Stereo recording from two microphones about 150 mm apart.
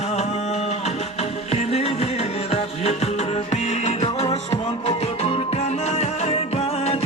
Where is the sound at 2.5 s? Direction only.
45° left (ahead or behind).